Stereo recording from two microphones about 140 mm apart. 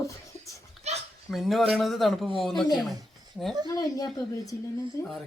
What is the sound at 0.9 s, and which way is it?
Dog, 50° right (ahead or behind).